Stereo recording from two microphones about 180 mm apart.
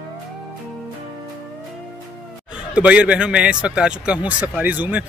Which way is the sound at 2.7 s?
5° right (ahead or behind).